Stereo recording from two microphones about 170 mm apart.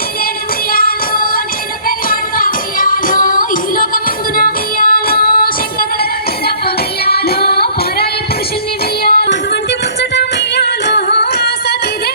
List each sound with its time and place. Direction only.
0.7 s music: 60° left (ahead or behind)
7.0 s music: 65° left (ahead or behind)
9.0 s music: 70° left (ahead or behind)